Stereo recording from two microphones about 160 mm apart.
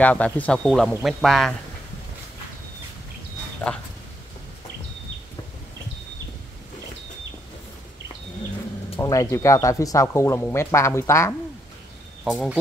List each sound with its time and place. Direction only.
0.0 s speech: 10° left (ahead or behind)
9.0 s speech: 20° left (ahead or behind)
12.3 s speech: 5° right (ahead or behind)